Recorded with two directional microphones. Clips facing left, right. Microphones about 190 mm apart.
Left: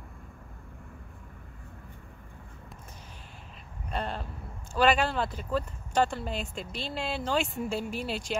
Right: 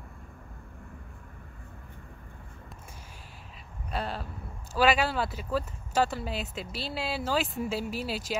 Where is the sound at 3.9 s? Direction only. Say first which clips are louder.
Even; 5° right (ahead or behind).